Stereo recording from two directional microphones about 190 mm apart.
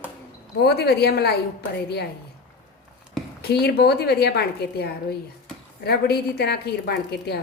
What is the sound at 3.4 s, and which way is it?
A woman's voice, 55° left (ahead or behind).